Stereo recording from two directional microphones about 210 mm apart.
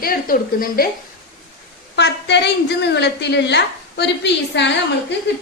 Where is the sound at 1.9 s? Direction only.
55° left (ahead or behind).